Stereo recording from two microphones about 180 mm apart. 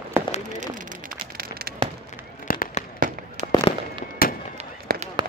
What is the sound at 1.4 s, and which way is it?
Fireworks, 55° right (ahead or behind).